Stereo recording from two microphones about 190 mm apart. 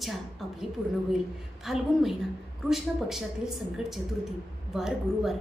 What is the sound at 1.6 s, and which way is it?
A woman's voice, centre (ahead or behind).